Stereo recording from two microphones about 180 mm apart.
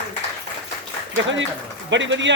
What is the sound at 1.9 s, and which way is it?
Speech, 90° right.